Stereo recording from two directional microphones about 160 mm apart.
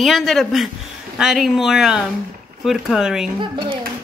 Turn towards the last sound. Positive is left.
turn(degrees=-30)  # may be behind; listen again after turning